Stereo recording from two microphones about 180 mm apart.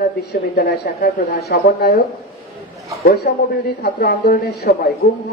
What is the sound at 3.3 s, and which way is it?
A woman's voice, 45° left (ahead or behind).